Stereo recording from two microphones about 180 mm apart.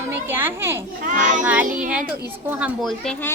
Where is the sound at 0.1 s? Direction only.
10° right (ahead or behind).